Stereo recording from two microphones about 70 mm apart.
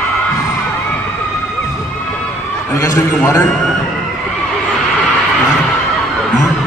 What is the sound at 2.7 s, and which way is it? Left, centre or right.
Speech, left.